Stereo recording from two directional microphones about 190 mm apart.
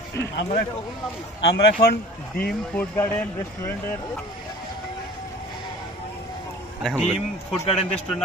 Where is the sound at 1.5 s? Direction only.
55° left (ahead or behind).